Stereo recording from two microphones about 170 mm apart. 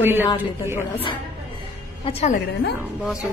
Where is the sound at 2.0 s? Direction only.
40° left (ahead or behind).